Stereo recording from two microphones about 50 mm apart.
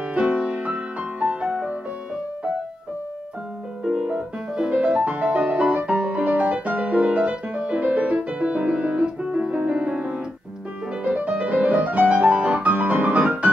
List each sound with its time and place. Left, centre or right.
0.1 s music: right
3.8 s music: right